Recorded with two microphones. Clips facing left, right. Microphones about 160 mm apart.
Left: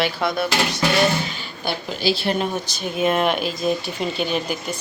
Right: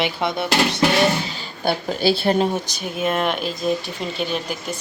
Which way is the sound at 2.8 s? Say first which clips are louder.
Left 3 dB; centre (ahead or behind).